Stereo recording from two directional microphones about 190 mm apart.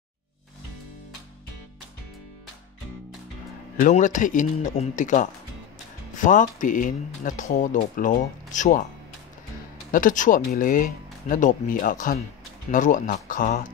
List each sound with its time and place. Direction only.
3.8 s speech: 40° left (ahead or behind)
9.8 s speech: 45° left (ahead or behind)